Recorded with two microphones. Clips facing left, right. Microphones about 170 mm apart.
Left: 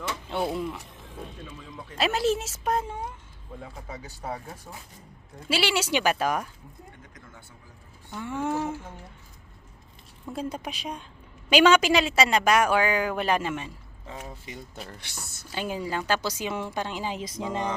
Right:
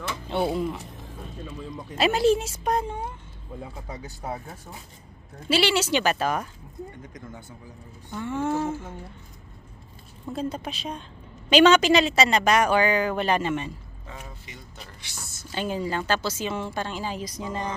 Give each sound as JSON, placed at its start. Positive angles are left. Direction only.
{"t": 0.3, "sound": "a woman's voice", "side_deg": 0}
{"t": 2.0, "sound": "a woman's voice", "side_deg": 0}
{"t": 5.5, "sound": "a woman's voice", "side_deg": 10}
{"t": 8.1, "sound": "a woman's voice", "side_deg": 10}
{"t": 10.3, "sound": "a woman's voice", "side_deg": 10}
{"t": 15.1, "sound": "a woman's voice", "side_deg": 60}
{"t": 15.5, "sound": "a woman's voice", "side_deg": 10}